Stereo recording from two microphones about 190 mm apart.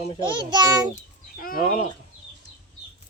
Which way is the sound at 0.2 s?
25° right (ahead or behind).